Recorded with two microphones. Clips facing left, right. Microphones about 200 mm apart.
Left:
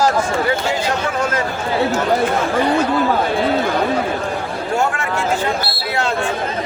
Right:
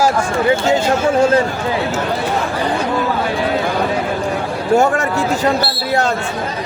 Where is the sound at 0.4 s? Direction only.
25° right (ahead or behind).